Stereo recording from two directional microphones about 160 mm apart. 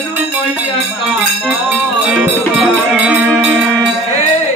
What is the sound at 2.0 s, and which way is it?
Music, 5° right (ahead or behind).